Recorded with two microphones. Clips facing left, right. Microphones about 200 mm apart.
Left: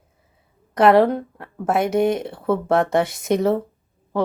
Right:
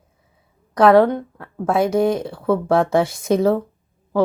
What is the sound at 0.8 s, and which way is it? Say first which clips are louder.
Speech: right 2 dB; 25° left (ahead or behind).